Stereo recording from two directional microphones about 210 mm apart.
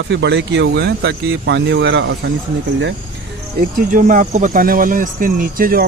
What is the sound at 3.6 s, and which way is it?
Speech, 40° right (ahead or behind).